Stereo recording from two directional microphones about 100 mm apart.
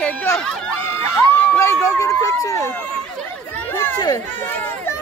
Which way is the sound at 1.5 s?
25° left (ahead or behind).